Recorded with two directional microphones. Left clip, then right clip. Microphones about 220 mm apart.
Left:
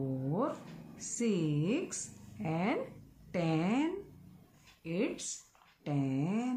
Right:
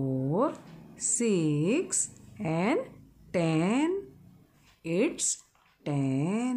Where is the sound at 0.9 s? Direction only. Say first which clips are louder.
Right 7 dB; 50° right (ahead or behind).